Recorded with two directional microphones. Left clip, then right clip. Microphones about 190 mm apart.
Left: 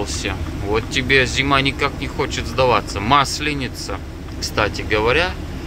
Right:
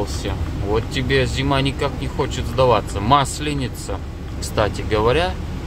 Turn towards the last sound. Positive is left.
turn(degrees=-25)  # may be behind; listen again after turning